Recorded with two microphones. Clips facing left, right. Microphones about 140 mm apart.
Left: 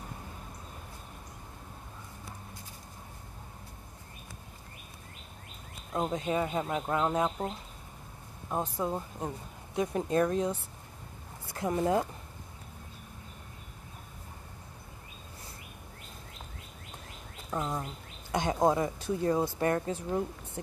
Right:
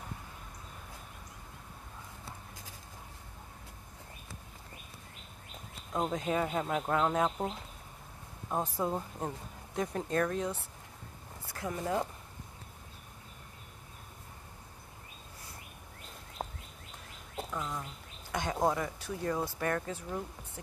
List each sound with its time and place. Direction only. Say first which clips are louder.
5.9 s speech: left 1 dB; centre (ahead or behind)
8.5 s speech: left 1 dB; centre (ahead or behind)
9.8 s speech: left 4 dB; 15° left (ahead or behind)
17.5 s speech: left 7 dB; 30° left (ahead or behind)